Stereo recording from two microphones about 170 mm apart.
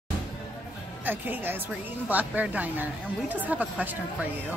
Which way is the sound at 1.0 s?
10° right (ahead or behind).